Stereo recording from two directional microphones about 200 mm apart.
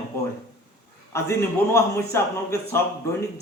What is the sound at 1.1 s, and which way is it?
A man's voice, 15° left (ahead or behind).